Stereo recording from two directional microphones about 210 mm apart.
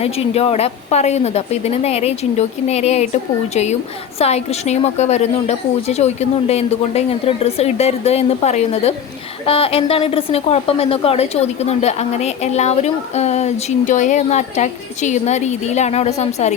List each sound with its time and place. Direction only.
0.0 s a woman's voice: 30° left (ahead or behind)